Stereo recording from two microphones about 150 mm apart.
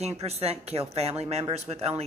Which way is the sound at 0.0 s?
45° right (ahead or behind).